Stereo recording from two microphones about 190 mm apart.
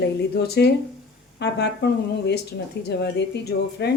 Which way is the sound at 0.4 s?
60° left (ahead or behind).